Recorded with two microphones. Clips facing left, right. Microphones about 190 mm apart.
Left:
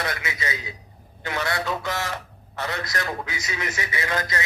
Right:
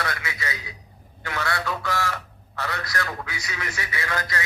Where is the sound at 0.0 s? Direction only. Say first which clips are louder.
Left 1 dB; 20° left (ahead or behind).